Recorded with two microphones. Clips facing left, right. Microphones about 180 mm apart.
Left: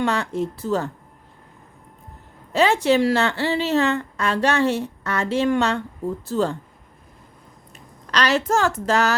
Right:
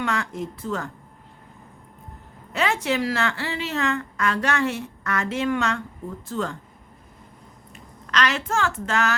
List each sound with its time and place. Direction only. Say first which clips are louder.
0.0 s a woman's voice: left 5 dB; 30° left (ahead or behind)
2.5 s a woman's voice: left 7 dB; 30° left (ahead or behind)
8.1 s a woman's voice: left 4 dB; 35° left (ahead or behind)